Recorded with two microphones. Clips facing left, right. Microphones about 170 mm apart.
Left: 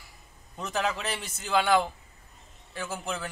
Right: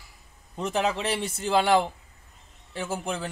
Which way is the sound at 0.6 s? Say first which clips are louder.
Right 4 dB; 25° right (ahead or behind).